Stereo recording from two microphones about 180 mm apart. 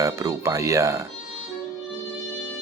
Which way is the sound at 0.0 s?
15° right (ahead or behind).